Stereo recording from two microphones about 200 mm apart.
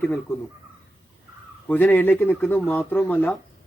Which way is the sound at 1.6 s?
10° left (ahead or behind).